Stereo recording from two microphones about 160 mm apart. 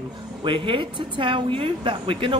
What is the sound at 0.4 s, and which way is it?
A woman's voice, 30° right (ahead or behind).